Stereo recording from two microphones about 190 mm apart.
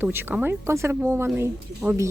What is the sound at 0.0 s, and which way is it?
Speech, 10° right (ahead or behind).